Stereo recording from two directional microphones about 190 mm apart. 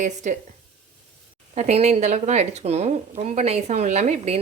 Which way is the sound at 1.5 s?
35° right (ahead or behind).